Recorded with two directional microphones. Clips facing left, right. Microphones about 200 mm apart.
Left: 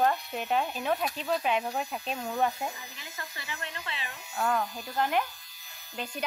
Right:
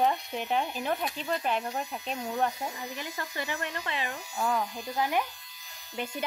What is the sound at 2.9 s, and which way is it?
Speech, 55° right (ahead or behind).